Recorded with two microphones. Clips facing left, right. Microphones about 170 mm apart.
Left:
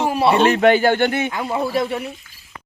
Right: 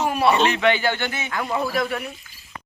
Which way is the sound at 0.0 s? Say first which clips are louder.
Left 2 dB; 30° left (ahead or behind).